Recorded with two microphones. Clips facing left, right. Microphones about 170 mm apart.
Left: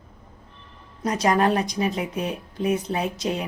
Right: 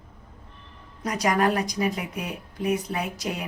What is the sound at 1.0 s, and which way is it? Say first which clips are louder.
Speech: left 3 dB; 25° left (ahead or behind).